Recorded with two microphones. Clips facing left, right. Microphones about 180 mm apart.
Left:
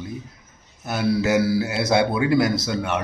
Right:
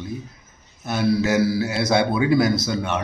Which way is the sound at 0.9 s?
5° left (ahead or behind).